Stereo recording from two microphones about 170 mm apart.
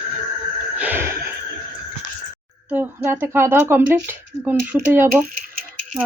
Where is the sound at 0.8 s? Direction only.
10° right (ahead or behind).